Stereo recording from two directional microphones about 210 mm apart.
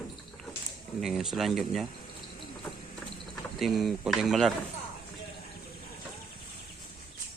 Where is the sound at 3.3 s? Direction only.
Centre (ahead or behind).